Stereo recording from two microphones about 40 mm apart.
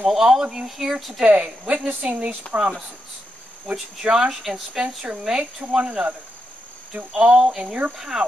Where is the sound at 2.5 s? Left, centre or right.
Right.